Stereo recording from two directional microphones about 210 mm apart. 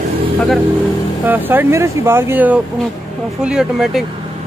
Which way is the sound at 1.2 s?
10° right (ahead or behind).